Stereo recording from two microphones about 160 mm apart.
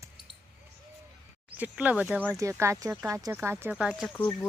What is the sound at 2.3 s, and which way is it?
Speech, 20° right (ahead or behind).